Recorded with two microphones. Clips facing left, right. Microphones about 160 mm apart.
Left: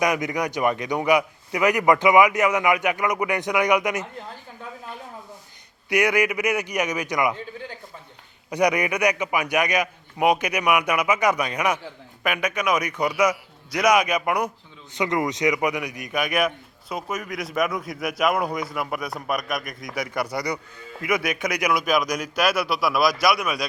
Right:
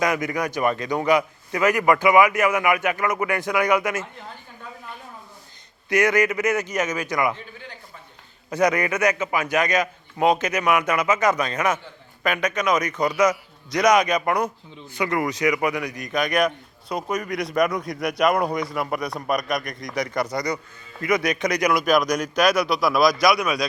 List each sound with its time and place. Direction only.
0.0 s a man's voice: 15° left (ahead or behind)
5.9 s a man's voice: 15° left (ahead or behind)
8.4 s a man's voice: 15° left (ahead or behind)